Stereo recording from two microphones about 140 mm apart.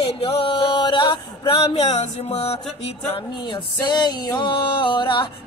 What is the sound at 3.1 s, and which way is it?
Music, 35° left (ahead or behind).